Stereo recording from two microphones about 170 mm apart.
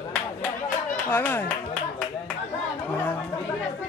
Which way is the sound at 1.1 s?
15° left (ahead or behind).